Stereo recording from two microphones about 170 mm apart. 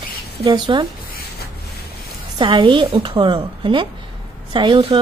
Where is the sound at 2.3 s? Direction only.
30° right (ahead or behind).